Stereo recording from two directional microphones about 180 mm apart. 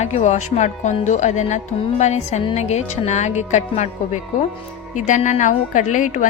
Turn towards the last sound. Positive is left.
turn(degrees=45)  # may be behind; listen again after turning